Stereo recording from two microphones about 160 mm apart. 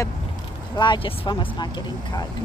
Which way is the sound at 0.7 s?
30° left (ahead or behind).